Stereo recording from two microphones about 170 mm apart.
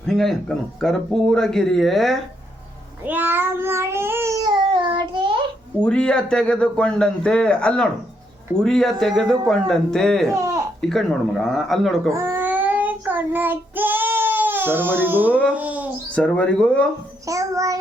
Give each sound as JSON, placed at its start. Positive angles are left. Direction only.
{"t": 0.0, "sound": "speech", "side_deg": 5}
{"t": 3.0, "sound": "babbling", "side_deg": -10}
{"t": 5.8, "sound": "speech", "side_deg": 5}
{"t": 12.1, "sound": "child singing", "side_deg": -15}
{"t": 15.5, "sound": "a sound", "side_deg": -10}
{"t": 16.1, "sound": "speech", "side_deg": 5}
{"t": 17.2, "sound": "child singing", "side_deg": -20}